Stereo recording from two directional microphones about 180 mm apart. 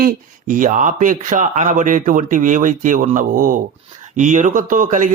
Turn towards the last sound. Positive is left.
turn(degrees=-45)  # may be behind; listen again after turning